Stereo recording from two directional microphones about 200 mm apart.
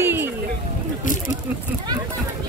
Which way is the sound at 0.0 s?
10° right (ahead or behind).